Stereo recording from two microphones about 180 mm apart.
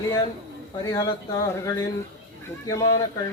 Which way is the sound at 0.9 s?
20° left (ahead or behind).